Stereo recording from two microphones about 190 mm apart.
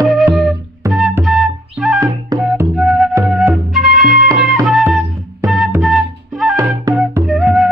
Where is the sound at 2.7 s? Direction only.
Centre (ahead or behind).